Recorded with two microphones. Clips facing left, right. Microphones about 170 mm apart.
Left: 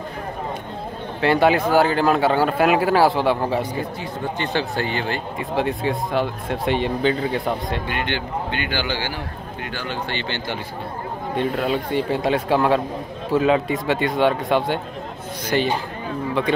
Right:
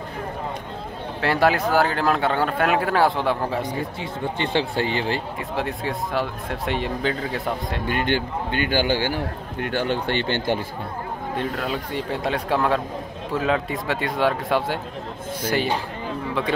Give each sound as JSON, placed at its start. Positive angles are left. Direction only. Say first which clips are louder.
{"t": 1.2, "sound": "speech", "louder": "left 3 dB", "side_deg": 0}
{"t": 4.0, "sound": "speech", "louder": "even", "side_deg": -25}
{"t": 5.6, "sound": "speech", "louder": "left 5 dB", "side_deg": 0}
{"t": 7.9, "sound": "a man's voice", "louder": "right 2 dB", "side_deg": -45}
{"t": 11.3, "sound": "a man's voice", "louder": "left 5 dB", "side_deg": 5}